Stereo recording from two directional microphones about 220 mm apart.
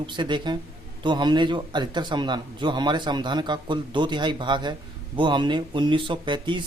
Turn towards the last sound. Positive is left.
turn(degrees=-20)  # may be behind; listen again after turning